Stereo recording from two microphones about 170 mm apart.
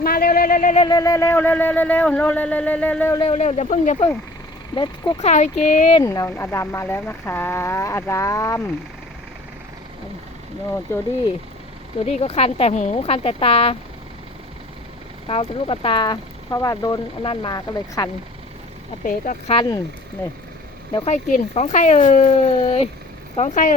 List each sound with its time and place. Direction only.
0.0 s a sound: 60° left (ahead or behind)
0.8 s speech: 25° left (ahead or behind)
3.2 s speech: 35° left (ahead or behind)
4.7 s speech: 25° left (ahead or behind)
5.2 s speech: 45° left (ahead or behind)
5.9 s speech: 20° left (ahead or behind)
12.0 s speech: 40° left (ahead or behind)
15.3 s speech: 35° left (ahead or behind)
19.0 s speech: 50° left (ahead or behind)
19.5 s speech: 25° left (ahead or behind)
21.0 s speech: 40° left (ahead or behind)